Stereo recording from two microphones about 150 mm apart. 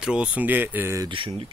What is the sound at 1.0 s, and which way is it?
Speech, 35° right (ahead or behind).